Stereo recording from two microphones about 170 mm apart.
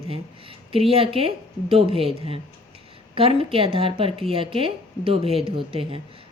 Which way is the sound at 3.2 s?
35° right (ahead or behind).